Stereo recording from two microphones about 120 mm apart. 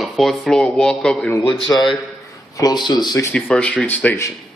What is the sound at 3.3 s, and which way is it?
A man's voice, 10° left (ahead or behind).